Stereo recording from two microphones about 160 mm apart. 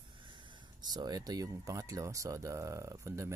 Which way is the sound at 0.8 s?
25° right (ahead or behind).